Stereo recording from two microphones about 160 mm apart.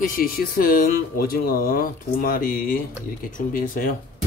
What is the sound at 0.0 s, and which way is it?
Speech, 65° left (ahead or behind).